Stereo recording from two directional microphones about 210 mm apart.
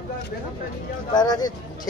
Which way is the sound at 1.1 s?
20° left (ahead or behind).